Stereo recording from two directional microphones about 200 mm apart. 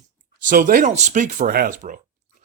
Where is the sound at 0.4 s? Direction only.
40° right (ahead or behind).